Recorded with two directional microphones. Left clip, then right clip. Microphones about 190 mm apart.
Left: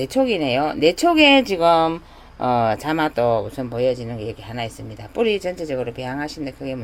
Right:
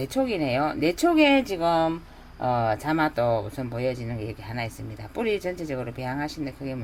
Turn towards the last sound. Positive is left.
turn(degrees=20)  # may be behind; listen again after turning